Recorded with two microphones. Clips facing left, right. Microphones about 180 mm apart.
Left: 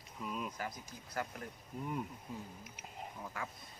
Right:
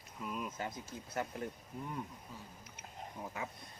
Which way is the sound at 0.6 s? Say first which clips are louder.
Right 2 dB; 25° right (ahead or behind).